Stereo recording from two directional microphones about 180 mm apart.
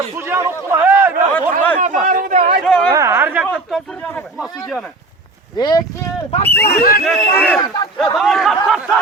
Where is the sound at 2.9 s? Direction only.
15° right (ahead or behind).